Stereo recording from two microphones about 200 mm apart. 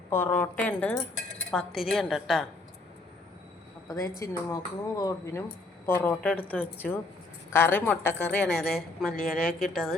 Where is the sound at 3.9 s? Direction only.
15° left (ahead or behind).